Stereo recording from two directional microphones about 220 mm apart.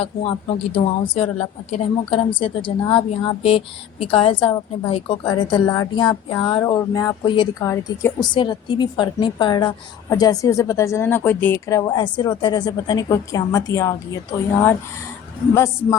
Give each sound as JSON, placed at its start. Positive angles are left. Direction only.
{"t": 0.0, "sound": "a woman's voice", "side_deg": 25}
{"t": 15.5, "sound": "speech", "side_deg": 15}